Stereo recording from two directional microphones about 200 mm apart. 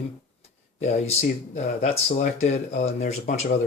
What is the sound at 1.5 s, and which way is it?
Speech, 35° left (ahead or behind).